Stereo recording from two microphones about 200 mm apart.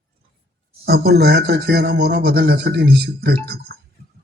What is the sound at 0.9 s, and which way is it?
Speech, 50° right (ahead or behind).